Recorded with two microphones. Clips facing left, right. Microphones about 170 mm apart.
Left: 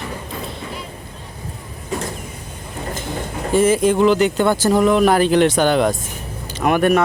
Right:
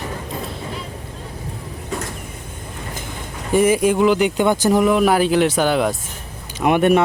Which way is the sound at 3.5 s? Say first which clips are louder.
Even; 15° right (ahead or behind).